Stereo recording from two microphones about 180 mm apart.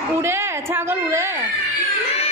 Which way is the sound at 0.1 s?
15° right (ahead or behind).